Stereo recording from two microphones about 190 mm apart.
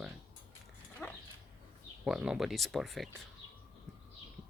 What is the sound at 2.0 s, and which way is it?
Speech, 5° right (ahead or behind).